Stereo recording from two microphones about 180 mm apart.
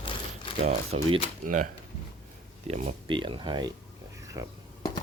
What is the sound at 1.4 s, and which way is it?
Speech, 45° right (ahead or behind).